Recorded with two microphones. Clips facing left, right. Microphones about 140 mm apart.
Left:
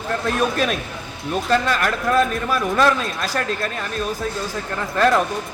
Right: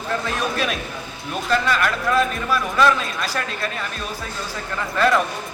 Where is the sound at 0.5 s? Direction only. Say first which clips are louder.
Left 2 dB; 45° left (ahead or behind).